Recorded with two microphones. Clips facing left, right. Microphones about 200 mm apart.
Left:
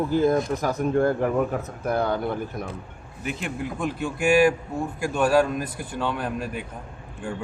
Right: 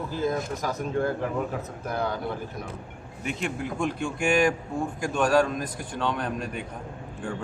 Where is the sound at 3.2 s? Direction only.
Centre (ahead or behind).